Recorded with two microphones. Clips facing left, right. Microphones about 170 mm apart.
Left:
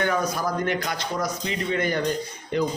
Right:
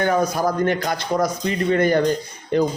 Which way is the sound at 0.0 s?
40° right (ahead or behind).